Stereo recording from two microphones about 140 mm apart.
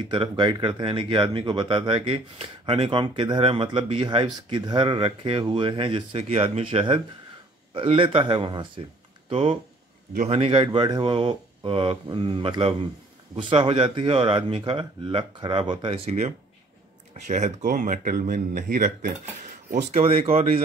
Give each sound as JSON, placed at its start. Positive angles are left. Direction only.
{"t": 0.1, "sound": "speech", "side_deg": -35}
{"t": 17.6, "sound": "speech", "side_deg": -65}
{"t": 19.7, "sound": "speech", "side_deg": -60}